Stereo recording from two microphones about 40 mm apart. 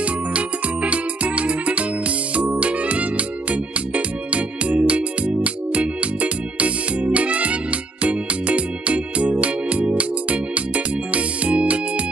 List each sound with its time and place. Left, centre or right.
0.0 s music: right